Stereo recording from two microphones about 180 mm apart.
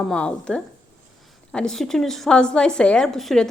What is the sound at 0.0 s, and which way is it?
Speech, 5° left (ahead or behind).